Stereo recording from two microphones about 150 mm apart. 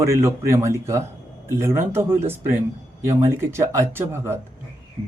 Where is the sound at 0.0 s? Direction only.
15° right (ahead or behind).